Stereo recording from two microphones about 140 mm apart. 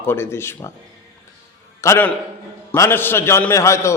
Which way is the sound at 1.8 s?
20° left (ahead or behind).